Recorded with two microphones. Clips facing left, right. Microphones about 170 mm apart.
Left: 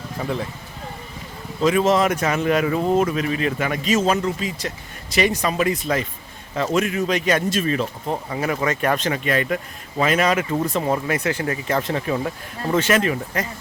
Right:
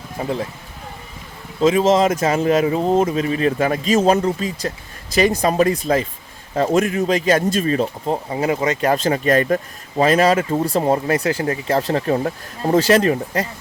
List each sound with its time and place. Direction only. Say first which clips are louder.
0.2 s speech: right 3 dB; 30° right (ahead or behind)
1.6 s speech: right 3 dB; 25° right (ahead or behind)
9.0 s speech: right 5 dB; 35° right (ahead or behind)